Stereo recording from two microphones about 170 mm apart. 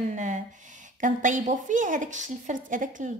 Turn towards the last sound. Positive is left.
turn(degrees=-50)  # may be behind; listen again after turning